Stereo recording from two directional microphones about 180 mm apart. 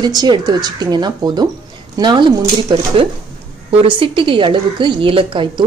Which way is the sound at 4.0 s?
30° right (ahead or behind).